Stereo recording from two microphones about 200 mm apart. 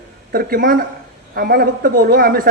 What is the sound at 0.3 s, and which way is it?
A man's voice, 45° right (ahead or behind).